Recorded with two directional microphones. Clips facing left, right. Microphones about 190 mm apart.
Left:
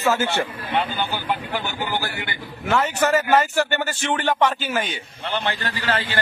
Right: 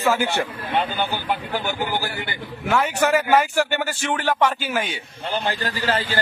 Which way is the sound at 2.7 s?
10° right (ahead or behind).